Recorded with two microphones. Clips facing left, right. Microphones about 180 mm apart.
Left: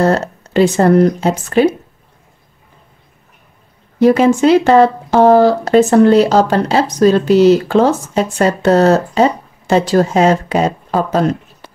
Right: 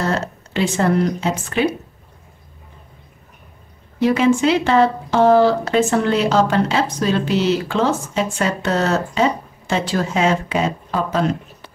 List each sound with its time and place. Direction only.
0.0 s speech: 40° left (ahead or behind)
4.0 s speech: 45° left (ahead or behind)